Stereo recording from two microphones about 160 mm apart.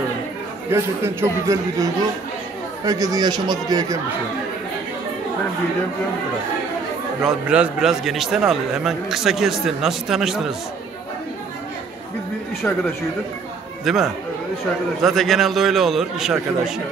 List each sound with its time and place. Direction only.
0.7 s speech: 15° right (ahead or behind)
7.2 s a man's voice: 5° right (ahead or behind)
12.6 s speech: 10° left (ahead or behind)
13.8 s a man's voice: centre (ahead or behind)